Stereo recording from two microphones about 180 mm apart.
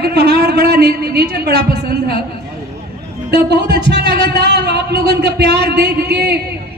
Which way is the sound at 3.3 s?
65° right (ahead or behind).